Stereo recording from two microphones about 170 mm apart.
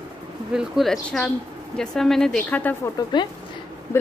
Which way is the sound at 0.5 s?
Centre (ahead or behind).